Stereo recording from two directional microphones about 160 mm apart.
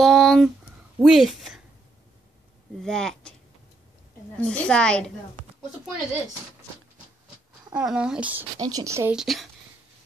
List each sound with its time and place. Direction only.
0.0 s a sound: centre (ahead or behind)
0.9 s a woman's voice: 5° right (ahead or behind)
2.8 s a woman's voice: 5° left (ahead or behind)
4.4 s a woman's voice: 5° left (ahead or behind)
7.7 s speech: 5° right (ahead or behind)
8.5 s a woman's voice: 25° right (ahead or behind)
9.1 s a woman's voice: centre (ahead or behind)